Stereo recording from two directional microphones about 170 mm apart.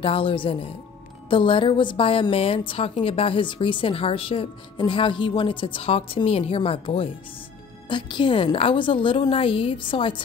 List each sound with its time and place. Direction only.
0.0 s a woman's voice: 30° left (ahead or behind)